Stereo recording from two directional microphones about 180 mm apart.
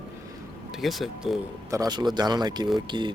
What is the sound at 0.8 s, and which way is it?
Speech, centre (ahead or behind).